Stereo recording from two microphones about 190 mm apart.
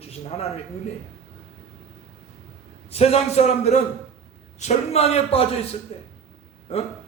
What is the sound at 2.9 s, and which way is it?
A man's voice, 30° left (ahead or behind).